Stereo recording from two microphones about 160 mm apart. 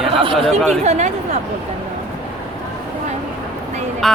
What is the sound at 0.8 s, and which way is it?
Speech, 45° right (ahead or behind).